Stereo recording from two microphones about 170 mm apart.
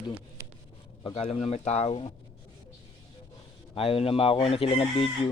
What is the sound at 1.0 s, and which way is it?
Speech, 35° left (ahead or behind).